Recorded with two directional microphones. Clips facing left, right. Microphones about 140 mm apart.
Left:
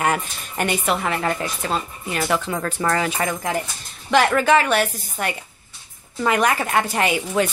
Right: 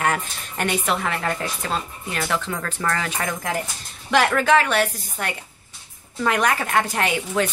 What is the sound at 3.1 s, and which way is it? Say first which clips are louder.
Speech: left 3 dB; 5° left (ahead or behind).